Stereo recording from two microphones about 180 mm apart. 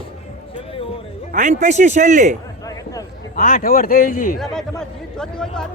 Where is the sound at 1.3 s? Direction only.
45° right (ahead or behind).